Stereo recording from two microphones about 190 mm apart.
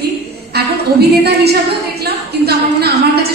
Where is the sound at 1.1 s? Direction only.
60° right (ahead or behind).